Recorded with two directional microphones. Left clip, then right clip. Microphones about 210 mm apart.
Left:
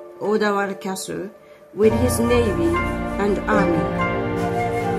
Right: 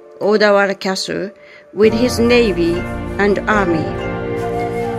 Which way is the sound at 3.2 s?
20° right (ahead or behind).